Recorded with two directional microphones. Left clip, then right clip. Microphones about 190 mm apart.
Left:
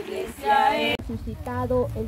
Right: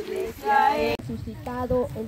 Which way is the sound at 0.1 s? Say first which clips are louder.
Left 1 dB; 30° left (ahead or behind).